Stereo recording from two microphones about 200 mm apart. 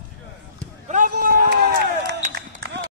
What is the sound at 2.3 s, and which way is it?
Run, 60° right (ahead or behind).